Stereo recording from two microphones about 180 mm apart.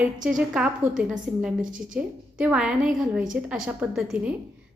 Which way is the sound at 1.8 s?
5° right (ahead or behind).